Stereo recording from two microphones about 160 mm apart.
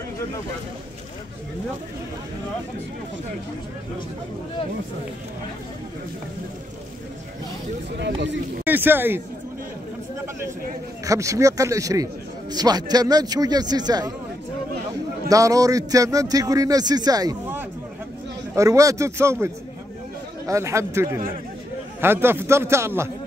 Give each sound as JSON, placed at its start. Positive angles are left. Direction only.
{"t": 8.0, "sound": "speech", "side_deg": -90}
{"t": 8.6, "sound": "a man's voice", "side_deg": -10}
{"t": 11.1, "sound": "a man's voice", "side_deg": -20}
{"t": 15.2, "sound": "a man's voice", "side_deg": -20}
{"t": 20.4, "sound": "a man's voice", "side_deg": -20}